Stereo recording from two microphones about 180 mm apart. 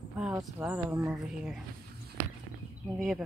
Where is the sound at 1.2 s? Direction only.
5° right (ahead or behind).